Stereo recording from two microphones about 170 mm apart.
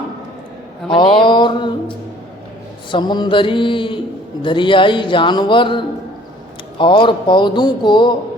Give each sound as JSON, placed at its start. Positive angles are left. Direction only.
{"t": 0.9, "sound": "mantra", "side_deg": 30}
{"t": 2.9, "sound": "speech", "side_deg": 25}